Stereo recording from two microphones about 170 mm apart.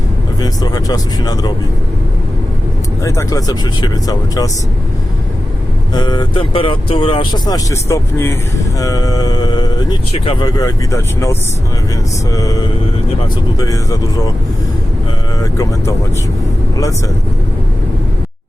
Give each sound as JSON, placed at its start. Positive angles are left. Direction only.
{"t": 0.4, "sound": "speech", "side_deg": 25}
{"t": 3.0, "sound": "speech", "side_deg": 15}
{"t": 5.9, "sound": "speech", "side_deg": 25}
{"t": 13.6, "sound": "speech", "side_deg": 20}